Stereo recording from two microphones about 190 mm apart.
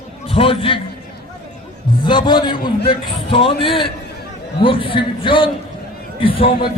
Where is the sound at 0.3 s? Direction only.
30° left (ahead or behind).